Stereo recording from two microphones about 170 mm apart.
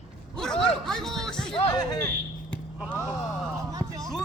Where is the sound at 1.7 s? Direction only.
25° left (ahead or behind).